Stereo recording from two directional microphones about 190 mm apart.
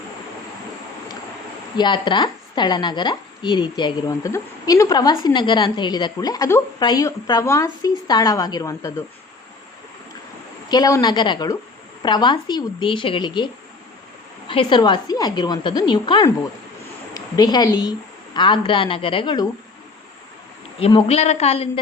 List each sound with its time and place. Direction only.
1.7 s a woman's voice: 25° left (ahead or behind)
10.7 s a woman's voice: 20° left (ahead or behind)
20.7 s speech: 30° left (ahead or behind)